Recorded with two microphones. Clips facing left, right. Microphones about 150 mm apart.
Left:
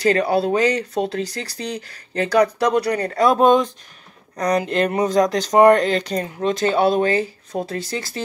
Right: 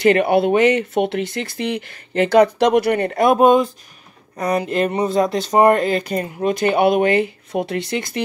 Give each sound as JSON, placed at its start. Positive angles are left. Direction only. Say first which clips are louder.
{"t": 0.0, "sound": "speech", "louder": "right 3 dB", "side_deg": -20}
{"t": 3.3, "sound": "speech", "louder": "right 2 dB", "side_deg": -10}